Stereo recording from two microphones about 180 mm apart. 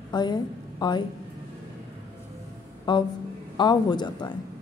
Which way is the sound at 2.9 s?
25° left (ahead or behind).